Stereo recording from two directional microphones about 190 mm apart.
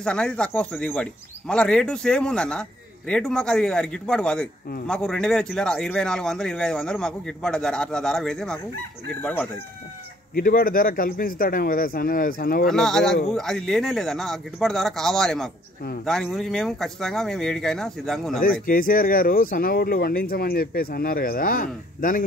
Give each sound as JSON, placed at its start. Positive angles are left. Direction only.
{"t": 0.0, "sound": "speech", "side_deg": 5}
{"t": 10.3, "sound": "speech", "side_deg": 50}
{"t": 12.6, "sound": "speech", "side_deg": 0}
{"t": 18.7, "sound": "speech", "side_deg": 50}